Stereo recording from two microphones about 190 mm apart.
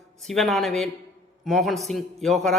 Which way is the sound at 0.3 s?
Centre (ahead or behind).